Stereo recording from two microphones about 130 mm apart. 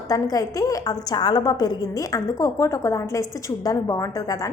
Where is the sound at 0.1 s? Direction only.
30° left (ahead or behind).